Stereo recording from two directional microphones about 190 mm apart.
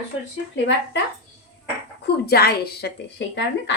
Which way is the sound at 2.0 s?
55° left (ahead or behind).